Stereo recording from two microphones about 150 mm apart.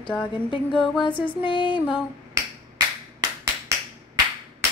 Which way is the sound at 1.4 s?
35° left (ahead or behind).